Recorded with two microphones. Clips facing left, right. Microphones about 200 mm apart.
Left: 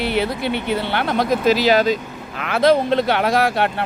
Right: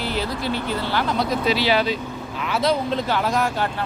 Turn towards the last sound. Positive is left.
turn(degrees=70)  # may be behind; listen again after turning